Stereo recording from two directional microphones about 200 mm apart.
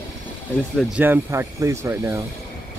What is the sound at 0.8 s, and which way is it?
Speech, 5° right (ahead or behind).